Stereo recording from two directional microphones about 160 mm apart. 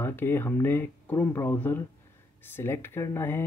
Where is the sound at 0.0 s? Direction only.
15° left (ahead or behind).